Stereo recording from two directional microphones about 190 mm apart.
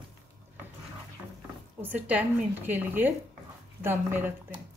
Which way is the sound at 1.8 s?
10° right (ahead or behind).